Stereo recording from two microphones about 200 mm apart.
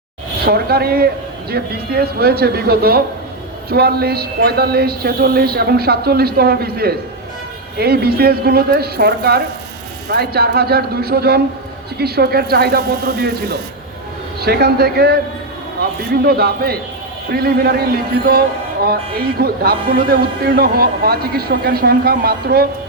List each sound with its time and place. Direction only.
0.4 s speech: 50° right (ahead or behind)